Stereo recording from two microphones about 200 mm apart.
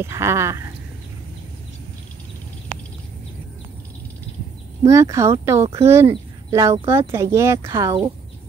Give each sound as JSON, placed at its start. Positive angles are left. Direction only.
{"t": 0.0, "sound": "speech", "side_deg": -15}
{"t": 4.8, "sound": "speech", "side_deg": -15}
{"t": 5.6, "sound": "speech", "side_deg": -30}
{"t": 5.9, "sound": "speech", "side_deg": -15}